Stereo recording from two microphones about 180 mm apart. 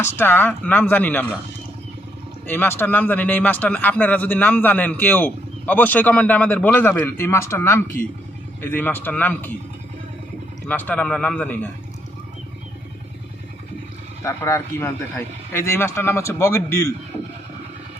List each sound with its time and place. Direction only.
0.0 s speech: 10° left (ahead or behind)
2.5 s speech: 10° left (ahead or behind)
10.7 s speech: 10° left (ahead or behind)
14.3 s speech: 15° left (ahead or behind)